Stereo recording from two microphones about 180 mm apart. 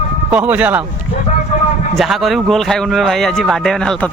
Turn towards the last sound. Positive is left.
turn(degrees=5)  # may be behind; listen again after turning